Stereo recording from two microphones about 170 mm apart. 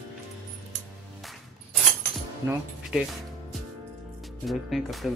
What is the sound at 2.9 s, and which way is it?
Speech, 5° right (ahead or behind).